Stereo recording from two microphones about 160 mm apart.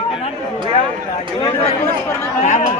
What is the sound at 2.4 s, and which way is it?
Speech, 45° left (ahead or behind).